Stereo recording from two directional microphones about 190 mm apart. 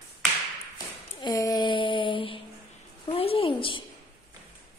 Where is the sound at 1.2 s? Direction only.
20° left (ahead or behind).